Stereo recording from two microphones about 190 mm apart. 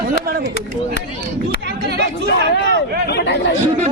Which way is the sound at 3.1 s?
65° left (ahead or behind).